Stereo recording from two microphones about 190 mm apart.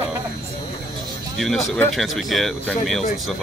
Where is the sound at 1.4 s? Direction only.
Centre (ahead or behind).